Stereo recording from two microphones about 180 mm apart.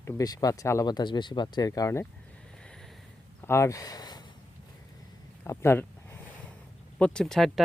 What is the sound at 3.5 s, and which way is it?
Speech, 15° left (ahead or behind).